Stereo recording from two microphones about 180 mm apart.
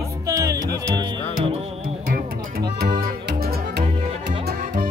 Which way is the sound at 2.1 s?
55° right (ahead or behind).